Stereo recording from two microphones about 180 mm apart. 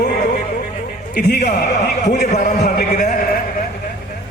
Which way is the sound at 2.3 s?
45° left (ahead or behind).